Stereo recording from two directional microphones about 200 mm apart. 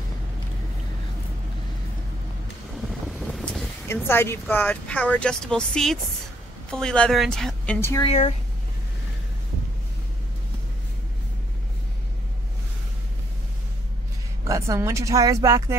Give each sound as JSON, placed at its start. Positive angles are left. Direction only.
{"t": 2.9, "sound": "vehicle", "side_deg": 0}
{"t": 3.8, "sound": "a woman's voice", "side_deg": 10}
{"t": 8.0, "sound": "speech", "side_deg": 35}
{"t": 14.4, "sound": "speech", "side_deg": -15}